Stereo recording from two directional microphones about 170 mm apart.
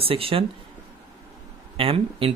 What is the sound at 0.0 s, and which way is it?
Speech, 35° right (ahead or behind).